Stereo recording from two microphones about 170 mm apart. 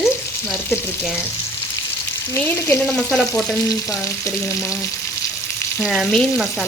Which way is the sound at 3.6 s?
20° left (ahead or behind).